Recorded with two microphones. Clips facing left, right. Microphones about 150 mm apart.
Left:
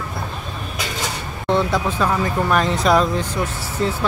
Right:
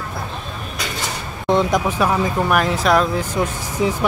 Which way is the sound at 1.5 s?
15° right (ahead or behind).